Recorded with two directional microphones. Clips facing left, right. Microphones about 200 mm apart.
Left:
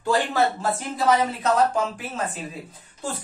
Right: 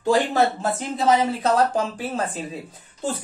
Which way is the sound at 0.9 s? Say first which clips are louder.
Right 2 dB; 20° right (ahead or behind).